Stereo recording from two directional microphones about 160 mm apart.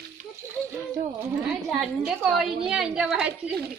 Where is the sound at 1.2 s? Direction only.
5° right (ahead or behind).